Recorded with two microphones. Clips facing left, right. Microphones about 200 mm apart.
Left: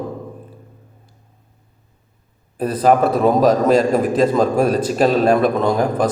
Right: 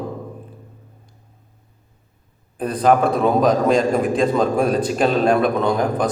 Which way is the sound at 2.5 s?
5° left (ahead or behind).